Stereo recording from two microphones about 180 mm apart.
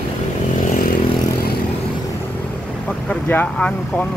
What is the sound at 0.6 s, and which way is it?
Vehicle, 50° left (ahead or behind).